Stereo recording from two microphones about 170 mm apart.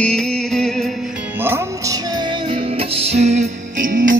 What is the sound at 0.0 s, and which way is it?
Music, 5° left (ahead or behind).